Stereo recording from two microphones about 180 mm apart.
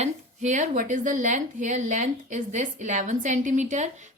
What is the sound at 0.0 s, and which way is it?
A woman's voice, 40° right (ahead or behind).